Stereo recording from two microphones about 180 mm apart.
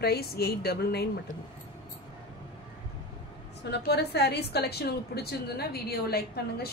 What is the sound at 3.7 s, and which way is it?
A woman's voice, 65° left (ahead or behind).